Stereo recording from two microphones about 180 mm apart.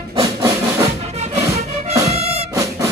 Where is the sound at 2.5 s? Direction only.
15° right (ahead or behind).